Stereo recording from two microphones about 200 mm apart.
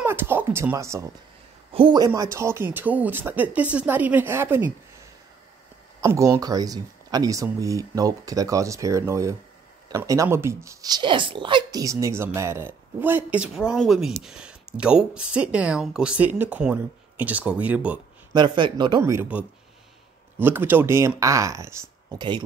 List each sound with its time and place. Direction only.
0.0 s speech: 10° right (ahead or behind)
1.7 s a woman's voice: 25° right (ahead or behind)
5.9 s a woman's voice: 15° right (ahead or behind)
18.3 s a woman's voice: 20° right (ahead or behind)